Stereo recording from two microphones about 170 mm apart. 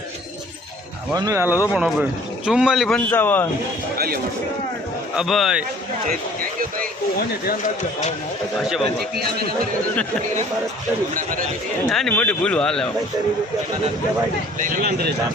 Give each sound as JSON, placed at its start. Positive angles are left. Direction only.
{"t": 1.1, "sound": "a man's voice", "side_deg": -20}
{"t": 3.1, "sound": "a man's voice", "side_deg": 10}
{"t": 3.9, "sound": "music", "side_deg": -60}
{"t": 5.1, "sound": "a man's voice", "side_deg": 0}
{"t": 8.6, "sound": "a man's voice", "side_deg": 0}
{"t": 11.1, "sound": "a man's voice", "side_deg": -55}
{"t": 11.9, "sound": "a man's voice", "side_deg": 5}
{"t": 14.6, "sound": "speech", "side_deg": -55}